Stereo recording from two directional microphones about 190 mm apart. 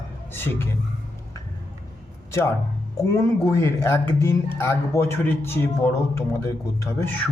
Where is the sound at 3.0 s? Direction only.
15° left (ahead or behind).